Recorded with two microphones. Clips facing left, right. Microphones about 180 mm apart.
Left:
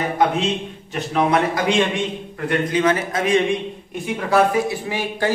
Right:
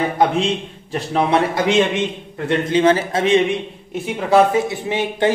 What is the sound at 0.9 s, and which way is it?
A man's voice, 30° right (ahead or behind).